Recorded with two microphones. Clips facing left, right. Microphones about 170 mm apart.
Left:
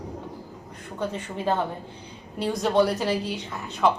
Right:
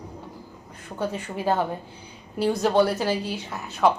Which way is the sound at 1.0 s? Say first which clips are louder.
Right 1 dB; 10° right (ahead or behind).